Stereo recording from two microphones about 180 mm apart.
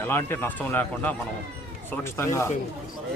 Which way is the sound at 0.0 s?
10° left (ahead or behind).